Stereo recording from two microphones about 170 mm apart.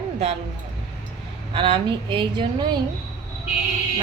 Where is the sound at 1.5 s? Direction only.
30° right (ahead or behind).